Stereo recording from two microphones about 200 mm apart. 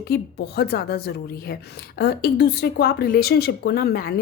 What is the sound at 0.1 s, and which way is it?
A woman's voice, 55° left (ahead or behind).